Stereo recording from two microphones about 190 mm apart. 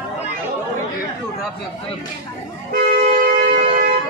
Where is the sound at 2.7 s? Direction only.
45° right (ahead or behind).